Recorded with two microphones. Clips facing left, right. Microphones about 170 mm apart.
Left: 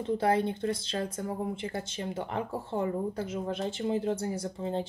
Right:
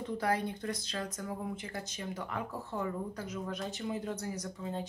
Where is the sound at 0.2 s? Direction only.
30° left (ahead or behind).